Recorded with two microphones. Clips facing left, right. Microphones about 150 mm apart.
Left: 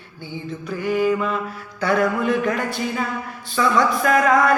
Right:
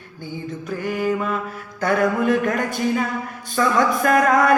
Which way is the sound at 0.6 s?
45° right (ahead or behind).